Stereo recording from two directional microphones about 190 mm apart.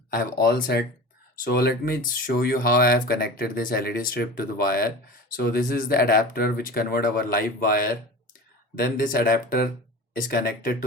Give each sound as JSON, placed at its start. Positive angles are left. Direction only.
{"t": 0.1, "sound": "speech", "side_deg": 50}